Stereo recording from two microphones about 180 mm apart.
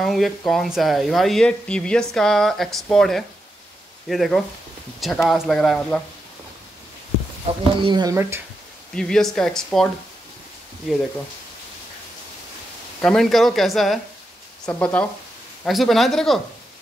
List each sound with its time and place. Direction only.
0.0 s a woman's voice: centre (ahead or behind)
7.8 s speech: 25° right (ahead or behind)
8.9 s a woman's voice: 5° left (ahead or behind)
10.9 s a woman's voice: centre (ahead or behind)
13.0 s a woman's voice: centre (ahead or behind)